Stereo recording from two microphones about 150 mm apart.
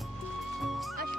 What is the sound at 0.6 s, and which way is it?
Music, centre (ahead or behind).